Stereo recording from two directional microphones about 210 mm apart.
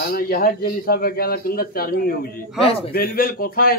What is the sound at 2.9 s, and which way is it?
Speech, 45° left (ahead or behind).